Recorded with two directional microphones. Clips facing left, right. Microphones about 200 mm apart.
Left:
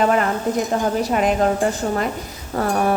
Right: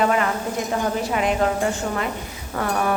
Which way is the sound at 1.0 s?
40° left (ahead or behind).